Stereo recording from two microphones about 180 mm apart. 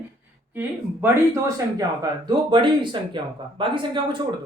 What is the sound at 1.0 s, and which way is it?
Speech, 15° right (ahead or behind).